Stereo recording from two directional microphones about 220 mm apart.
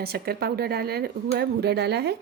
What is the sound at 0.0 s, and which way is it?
Speech, 45° right (ahead or behind).